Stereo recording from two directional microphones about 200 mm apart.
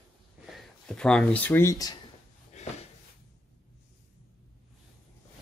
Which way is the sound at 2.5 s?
35° left (ahead or behind).